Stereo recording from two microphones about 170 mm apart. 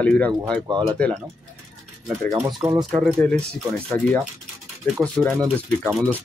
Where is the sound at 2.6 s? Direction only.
30° right (ahead or behind).